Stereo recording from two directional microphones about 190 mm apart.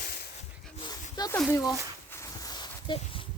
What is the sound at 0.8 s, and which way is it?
Dog, 20° left (ahead or behind).